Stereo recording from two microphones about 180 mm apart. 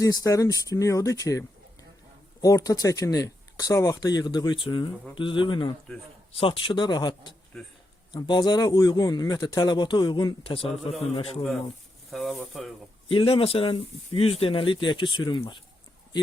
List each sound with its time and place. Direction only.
0.0 s a man's voice: 20° left (ahead or behind); by 11.3 s 35° left (ahead or behind)
12.1 s speech: centre (ahead or behind)
13.1 s speech: 30° left (ahead or behind)